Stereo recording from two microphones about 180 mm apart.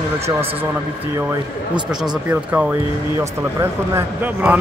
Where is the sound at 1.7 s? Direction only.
25° right (ahead or behind).